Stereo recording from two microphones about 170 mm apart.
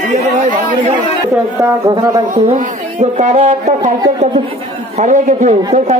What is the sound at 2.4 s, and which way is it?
A man's voice, 45° right (ahead or behind).